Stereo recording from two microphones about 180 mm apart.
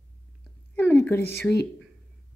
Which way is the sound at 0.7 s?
10° left (ahead or behind).